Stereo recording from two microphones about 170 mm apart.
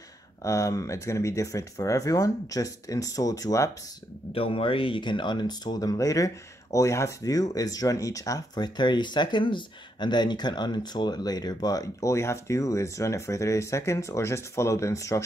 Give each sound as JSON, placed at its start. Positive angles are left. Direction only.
{"t": 0.4, "sound": "speech", "side_deg": 20}
{"t": 4.3, "sound": "speech", "side_deg": 30}